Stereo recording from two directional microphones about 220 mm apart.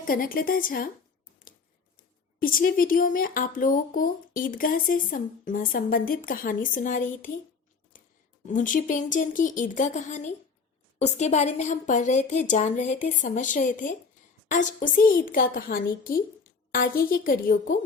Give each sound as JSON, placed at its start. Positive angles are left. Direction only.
{"t": 0.0, "sound": "speech", "side_deg": 40}
{"t": 2.4, "sound": "speech", "side_deg": 40}
{"t": 7.9, "sound": "a sound", "side_deg": 40}
{"t": 8.4, "sound": "speech", "side_deg": 35}